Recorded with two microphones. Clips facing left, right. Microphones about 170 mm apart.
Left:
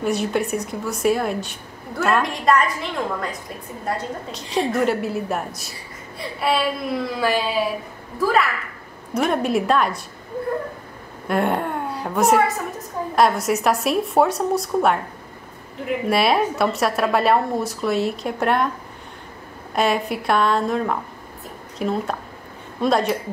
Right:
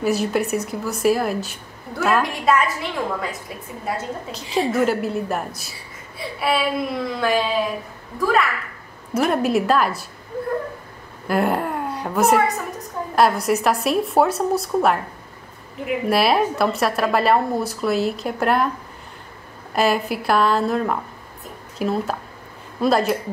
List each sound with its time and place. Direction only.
0.0 s a woman's voice: centre (ahead or behind)
9.1 s a woman's voice: centre (ahead or behind)
11.2 s a woman's voice: centre (ahead or behind)
19.7 s a woman's voice: centre (ahead or behind)